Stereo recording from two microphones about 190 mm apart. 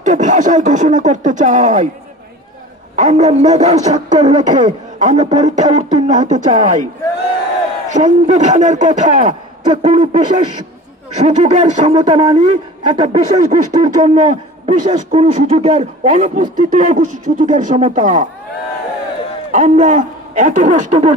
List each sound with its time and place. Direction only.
0.0 s a man's voice: 40° right (ahead or behind)
3.0 s a man's voice: 40° right (ahead or behind)
7.9 s a man's voice: 40° right (ahead or behind)
19.5 s a man's voice: 40° right (ahead or behind)